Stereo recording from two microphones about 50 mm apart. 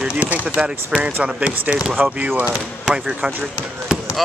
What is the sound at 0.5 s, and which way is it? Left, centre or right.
Speech, right.